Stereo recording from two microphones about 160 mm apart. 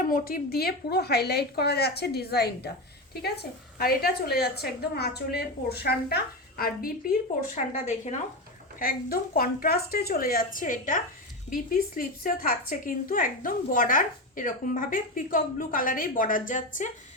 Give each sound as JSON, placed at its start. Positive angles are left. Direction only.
{"t": 0.1, "sound": "a woman's voice", "side_deg": 65}
{"t": 7.4, "sound": "a woman's voice", "side_deg": 50}
{"t": 8.8, "sound": "a woman's voice", "side_deg": 65}